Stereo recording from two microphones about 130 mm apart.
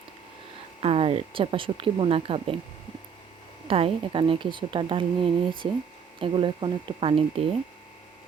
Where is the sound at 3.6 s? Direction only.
45° right (ahead or behind).